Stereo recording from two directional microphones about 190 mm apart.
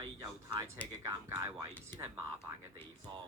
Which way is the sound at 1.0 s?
15° right (ahead or behind).